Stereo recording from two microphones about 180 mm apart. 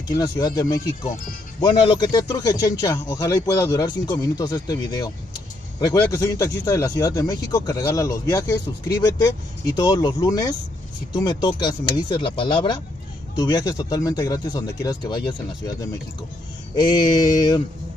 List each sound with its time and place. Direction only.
0.1 s speech: 20° left (ahead or behind)